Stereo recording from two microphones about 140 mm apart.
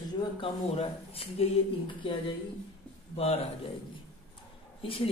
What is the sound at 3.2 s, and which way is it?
Speech, 45° left (ahead or behind).